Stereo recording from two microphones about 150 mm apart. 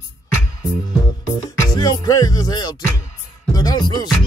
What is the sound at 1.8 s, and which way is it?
Music, 25° left (ahead or behind).